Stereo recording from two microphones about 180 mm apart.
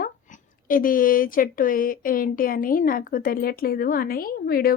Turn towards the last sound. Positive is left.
turn(degrees=55)  # may be behind; listen again after turning